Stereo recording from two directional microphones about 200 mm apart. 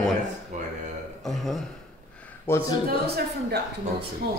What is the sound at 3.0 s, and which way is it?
Speech, 55° right (ahead or behind).